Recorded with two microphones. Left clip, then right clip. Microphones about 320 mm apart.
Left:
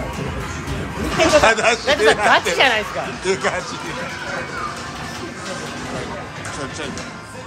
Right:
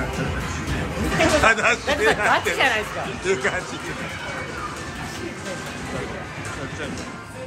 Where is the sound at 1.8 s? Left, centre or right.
Left.